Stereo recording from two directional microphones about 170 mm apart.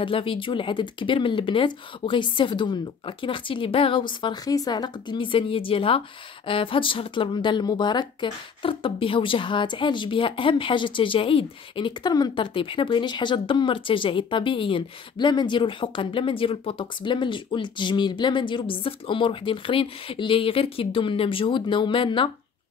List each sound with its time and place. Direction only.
0.0 s speech: 30° left (ahead or behind)